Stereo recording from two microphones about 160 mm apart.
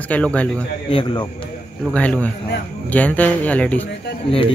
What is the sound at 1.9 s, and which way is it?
Speech, 10° left (ahead or behind).